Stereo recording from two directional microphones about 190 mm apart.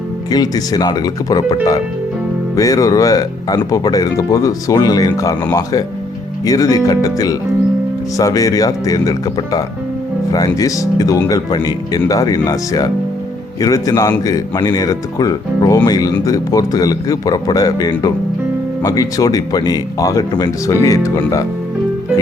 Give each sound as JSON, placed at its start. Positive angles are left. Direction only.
{"t": 0.3, "sound": "speech", "side_deg": 20}
{"t": 2.6, "sound": "speech", "side_deg": 15}